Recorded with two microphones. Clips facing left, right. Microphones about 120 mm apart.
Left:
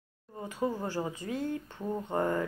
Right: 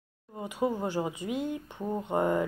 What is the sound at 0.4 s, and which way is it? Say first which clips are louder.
Speech: right 3 dB; 15° right (ahead or behind).